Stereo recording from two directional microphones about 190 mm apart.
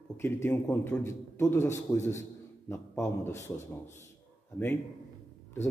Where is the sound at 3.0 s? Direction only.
15° left (ahead or behind).